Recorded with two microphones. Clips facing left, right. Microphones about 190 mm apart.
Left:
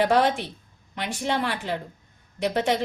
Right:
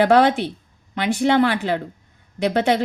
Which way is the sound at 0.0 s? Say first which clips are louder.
Right 6 dB; 65° right (ahead or behind).